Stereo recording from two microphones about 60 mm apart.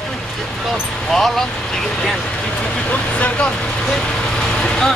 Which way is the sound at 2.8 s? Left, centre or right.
Left.